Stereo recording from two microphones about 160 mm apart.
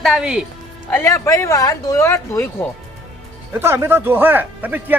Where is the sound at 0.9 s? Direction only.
15° left (ahead or behind).